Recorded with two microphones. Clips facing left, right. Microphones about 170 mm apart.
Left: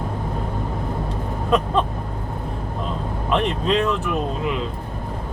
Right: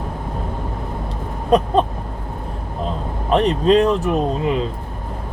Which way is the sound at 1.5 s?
40° right (ahead or behind).